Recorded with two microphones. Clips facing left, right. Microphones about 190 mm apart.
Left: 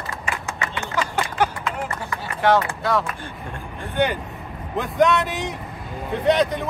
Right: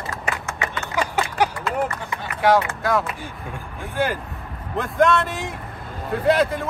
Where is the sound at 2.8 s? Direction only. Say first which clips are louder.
Right 1 dB; 10° right (ahead or behind).